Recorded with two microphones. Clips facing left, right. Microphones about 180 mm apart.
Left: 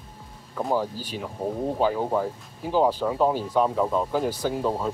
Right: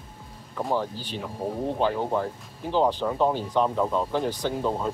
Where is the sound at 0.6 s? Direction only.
5° left (ahead or behind).